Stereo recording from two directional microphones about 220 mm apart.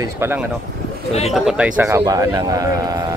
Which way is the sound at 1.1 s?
30° left (ahead or behind).